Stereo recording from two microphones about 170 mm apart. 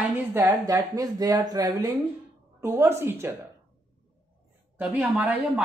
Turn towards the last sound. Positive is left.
turn(degrees=-10)  # may be behind; listen again after turning